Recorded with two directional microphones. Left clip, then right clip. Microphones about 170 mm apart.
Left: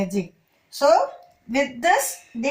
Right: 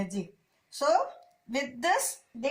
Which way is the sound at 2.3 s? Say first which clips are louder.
Left 5 dB; 20° right (ahead or behind).